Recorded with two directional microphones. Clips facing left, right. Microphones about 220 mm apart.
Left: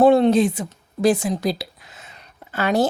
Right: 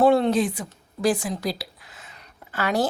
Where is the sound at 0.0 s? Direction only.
20° left (ahead or behind).